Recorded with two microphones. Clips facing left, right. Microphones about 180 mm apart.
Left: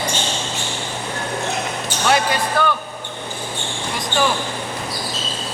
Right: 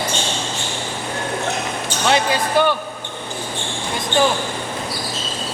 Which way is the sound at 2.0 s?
25° right (ahead or behind).